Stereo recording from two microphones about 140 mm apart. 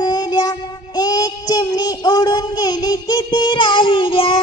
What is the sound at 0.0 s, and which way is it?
Child singing, 30° left (ahead or behind).